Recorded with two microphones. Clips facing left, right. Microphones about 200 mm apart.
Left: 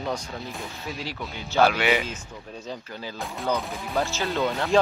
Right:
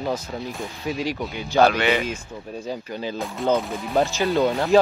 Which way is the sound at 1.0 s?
15° right (ahead or behind).